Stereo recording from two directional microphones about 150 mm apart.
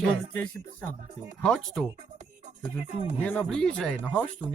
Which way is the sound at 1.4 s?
5° left (ahead or behind).